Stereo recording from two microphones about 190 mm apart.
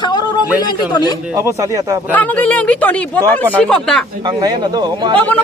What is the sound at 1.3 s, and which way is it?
Speech, 15° right (ahead or behind).